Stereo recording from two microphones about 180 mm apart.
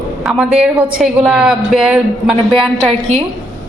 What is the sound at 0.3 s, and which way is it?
A woman's voice, 5° right (ahead or behind).